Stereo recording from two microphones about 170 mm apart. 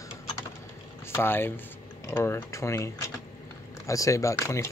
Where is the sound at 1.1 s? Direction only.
15° left (ahead or behind).